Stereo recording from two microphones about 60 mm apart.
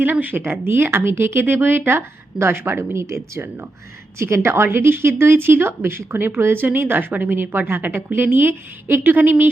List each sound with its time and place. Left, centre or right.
0.0 s a woman's voice: right
4.2 s a woman's voice: right